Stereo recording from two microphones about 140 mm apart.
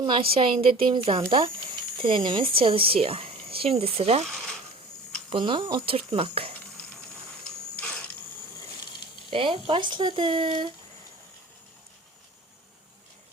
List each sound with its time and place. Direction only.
0.0 s speech: 35° right (ahead or behind)
5.3 s speech: 35° right (ahead or behind)
7.8 s a sound: 5° left (ahead or behind)
9.3 s speech: 40° right (ahead or behind)